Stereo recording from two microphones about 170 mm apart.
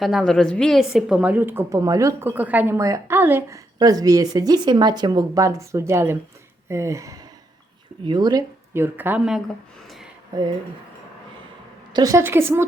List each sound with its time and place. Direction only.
0.0 s a woman's voice: centre (ahead or behind)
11.9 s a woman's voice: 20° right (ahead or behind)